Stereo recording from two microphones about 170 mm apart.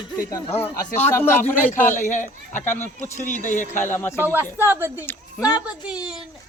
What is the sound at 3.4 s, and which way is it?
Speech, 45° left (ahead or behind).